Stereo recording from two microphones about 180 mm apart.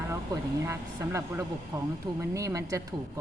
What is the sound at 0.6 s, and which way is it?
A woman's voice, 15° right (ahead or behind).